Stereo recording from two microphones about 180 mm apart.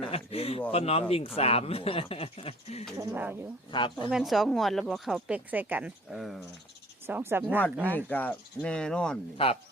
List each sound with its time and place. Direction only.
0.0 s speech: 35° left (ahead or behind)
3.0 s speech: 15° right (ahead or behind)
3.7 s speech: 25° left (ahead or behind)
4.1 s speech: centre (ahead or behind)
7.1 s speech: 10° right (ahead or behind)
7.9 s speech: 10° left (ahead or behind)
9.4 s speech: 30° left (ahead or behind)